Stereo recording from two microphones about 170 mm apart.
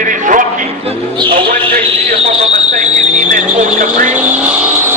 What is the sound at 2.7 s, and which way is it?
Speech, 45° right (ahead or behind).